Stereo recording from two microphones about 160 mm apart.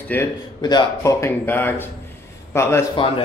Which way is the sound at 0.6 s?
25° left (ahead or behind).